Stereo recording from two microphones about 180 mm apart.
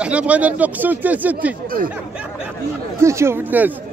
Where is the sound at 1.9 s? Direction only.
10° right (ahead or behind).